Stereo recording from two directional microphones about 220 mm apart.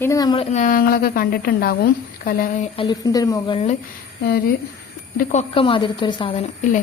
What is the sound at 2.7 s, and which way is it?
A woman's voice, 20° left (ahead or behind).